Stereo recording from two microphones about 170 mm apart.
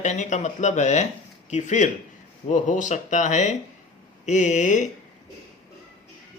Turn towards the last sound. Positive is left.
turn(degrees=45)  # may be behind; listen again after turning